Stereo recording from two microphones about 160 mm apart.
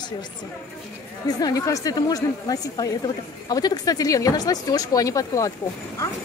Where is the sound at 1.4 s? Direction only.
20° left (ahead or behind).